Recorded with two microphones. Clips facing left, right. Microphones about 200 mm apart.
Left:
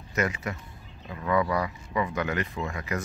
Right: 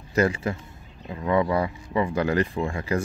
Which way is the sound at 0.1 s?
30° right (ahead or behind).